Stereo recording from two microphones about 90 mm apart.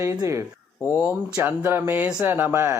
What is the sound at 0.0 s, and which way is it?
Speech, 35° right (ahead or behind).